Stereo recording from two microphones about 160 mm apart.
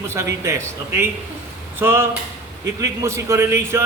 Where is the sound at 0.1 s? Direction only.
20° right (ahead or behind).